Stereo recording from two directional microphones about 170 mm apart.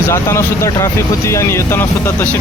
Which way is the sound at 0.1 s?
15° left (ahead or behind).